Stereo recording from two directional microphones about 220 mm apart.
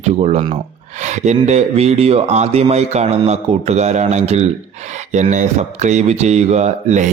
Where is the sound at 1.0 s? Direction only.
30° right (ahead or behind).